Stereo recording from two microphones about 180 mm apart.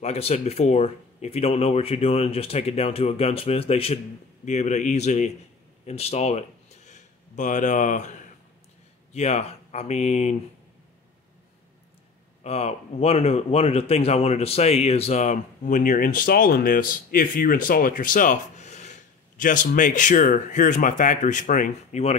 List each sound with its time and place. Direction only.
0.0 s speech: 35° left (ahead or behind)
9.1 s speech: 40° left (ahead or behind)
12.4 s speech: 35° left (ahead or behind)